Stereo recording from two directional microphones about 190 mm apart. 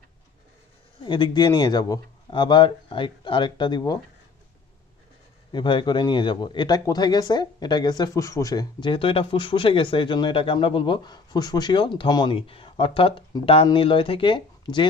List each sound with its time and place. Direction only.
1.0 s a man's voice: 25° left (ahead or behind)
5.5 s a man's voice: 25° left (ahead or behind)